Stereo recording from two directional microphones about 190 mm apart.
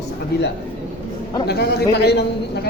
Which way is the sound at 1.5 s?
55° left (ahead or behind).